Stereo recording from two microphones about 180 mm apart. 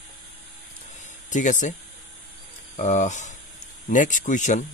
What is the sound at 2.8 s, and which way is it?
Speech, 45° left (ahead or behind).